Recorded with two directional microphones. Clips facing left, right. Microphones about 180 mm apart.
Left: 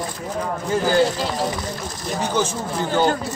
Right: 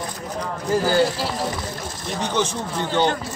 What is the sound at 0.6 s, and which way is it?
Speech, centre (ahead or behind).